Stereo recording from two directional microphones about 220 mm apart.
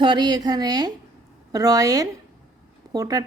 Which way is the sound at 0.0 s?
20° right (ahead or behind).